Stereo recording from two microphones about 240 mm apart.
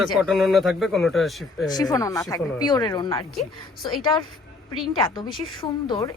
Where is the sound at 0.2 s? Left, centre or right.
Centre.